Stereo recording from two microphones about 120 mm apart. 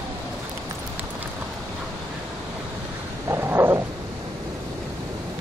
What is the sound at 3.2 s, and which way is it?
Dog, 20° right (ahead or behind).